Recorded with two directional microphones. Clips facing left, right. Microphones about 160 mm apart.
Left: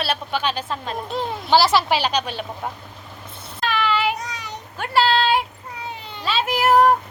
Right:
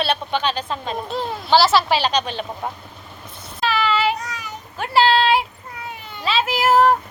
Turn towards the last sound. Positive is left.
turn(degrees=0)  # may be behind; listen again after turning